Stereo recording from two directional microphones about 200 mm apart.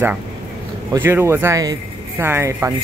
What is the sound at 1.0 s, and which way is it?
Speech, 10° right (ahead or behind).